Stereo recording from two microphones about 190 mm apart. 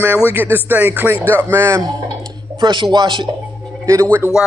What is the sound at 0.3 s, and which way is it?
Speech, 10° right (ahead or behind).